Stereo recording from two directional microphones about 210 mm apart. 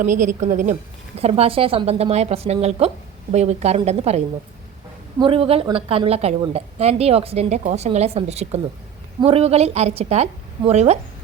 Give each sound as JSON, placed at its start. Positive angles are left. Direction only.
{"t": 0.0, "sound": "a woman's voice", "side_deg": -40}
{"t": 5.2, "sound": "a woman's voice", "side_deg": -25}